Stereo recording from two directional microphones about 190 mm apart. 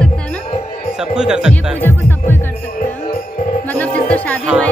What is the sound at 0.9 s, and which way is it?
Speech, 5° right (ahead or behind).